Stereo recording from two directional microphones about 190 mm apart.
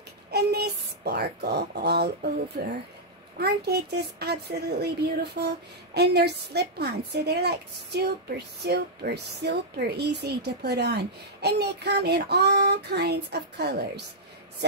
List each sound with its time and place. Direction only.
0.3 s speech: 60° right (ahead or behind)